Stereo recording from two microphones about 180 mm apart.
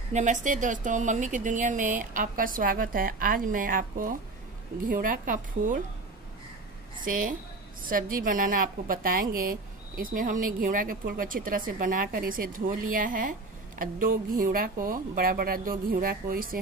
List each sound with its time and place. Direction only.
0.1 s a woman's voice: 45° right (ahead or behind)
7.1 s a woman's voice: 50° right (ahead or behind)